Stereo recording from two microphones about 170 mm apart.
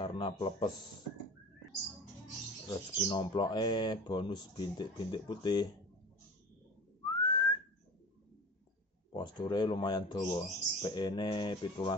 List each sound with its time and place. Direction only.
0.0 s speech: 30° left (ahead or behind)
2.7 s speech: 30° left (ahead or behind)
7.2 s whistling: 25° left (ahead or behind)
9.1 s speech: 25° left (ahead or behind)